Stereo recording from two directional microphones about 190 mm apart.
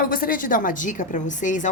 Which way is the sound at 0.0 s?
50° left (ahead or behind).